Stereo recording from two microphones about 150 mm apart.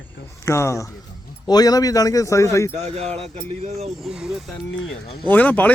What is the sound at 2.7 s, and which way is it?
Speech, 50° right (ahead or behind).